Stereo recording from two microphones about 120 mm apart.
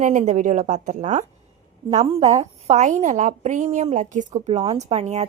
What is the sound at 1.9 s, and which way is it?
Speech, 55° right (ahead or behind).